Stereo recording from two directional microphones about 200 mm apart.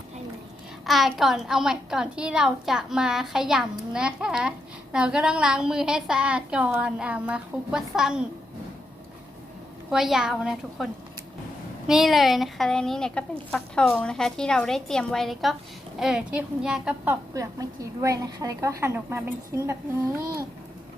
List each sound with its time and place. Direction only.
0.9 s a woman's voice: centre (ahead or behind)
9.9 s a woman's voice: centre (ahead or behind)
11.9 s a woman's voice: centre (ahead or behind)
17.3 s a woman's voice: 15° right (ahead or behind)